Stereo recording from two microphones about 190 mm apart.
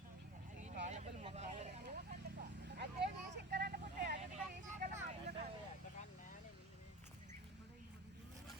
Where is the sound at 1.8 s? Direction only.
60° right (ahead or behind).